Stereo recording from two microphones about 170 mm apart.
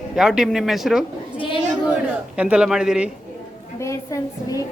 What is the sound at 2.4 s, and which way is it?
Speech, 5° right (ahead or behind).